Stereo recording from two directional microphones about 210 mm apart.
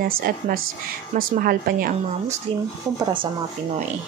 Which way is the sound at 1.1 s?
40° right (ahead or behind).